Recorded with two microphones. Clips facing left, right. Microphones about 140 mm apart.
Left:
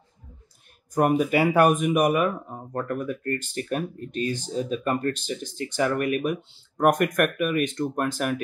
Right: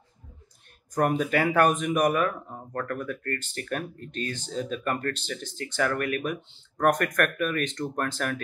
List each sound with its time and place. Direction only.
0.9 s speech: 10° left (ahead or behind)